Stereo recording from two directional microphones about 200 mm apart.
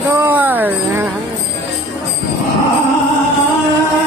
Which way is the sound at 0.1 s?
10° right (ahead or behind).